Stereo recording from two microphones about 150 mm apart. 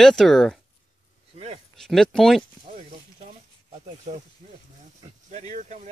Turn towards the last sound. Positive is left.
turn(degrees=-55)  # may be behind; listen again after turning